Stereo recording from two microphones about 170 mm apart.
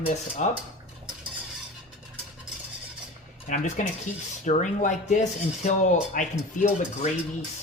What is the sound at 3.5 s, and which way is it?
Speech, 45° left (ahead or behind).